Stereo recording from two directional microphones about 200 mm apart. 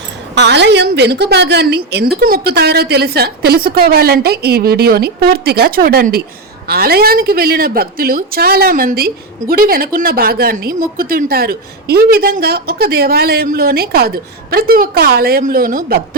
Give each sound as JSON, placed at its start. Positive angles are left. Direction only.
{"t": 0.3, "sound": "a woman's voice", "side_deg": -60}